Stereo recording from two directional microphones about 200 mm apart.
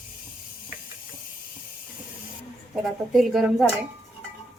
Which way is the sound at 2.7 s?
Centre (ahead or behind).